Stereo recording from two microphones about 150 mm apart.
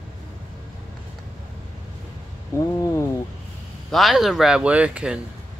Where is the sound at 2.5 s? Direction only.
20° left (ahead or behind).